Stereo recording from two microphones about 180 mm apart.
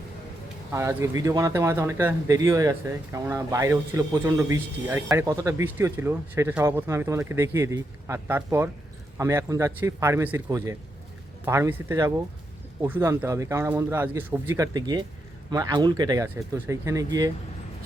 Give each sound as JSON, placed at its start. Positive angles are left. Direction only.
{"t": 0.7, "sound": "speech", "side_deg": -15}